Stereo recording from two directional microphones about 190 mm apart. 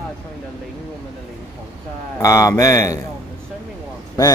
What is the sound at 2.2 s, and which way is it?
Speech, 15° left (ahead or behind).